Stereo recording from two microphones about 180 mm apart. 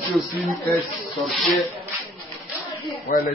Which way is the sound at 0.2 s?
15° left (ahead or behind).